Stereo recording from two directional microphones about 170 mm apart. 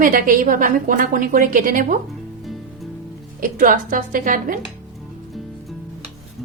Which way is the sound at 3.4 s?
55° right (ahead or behind).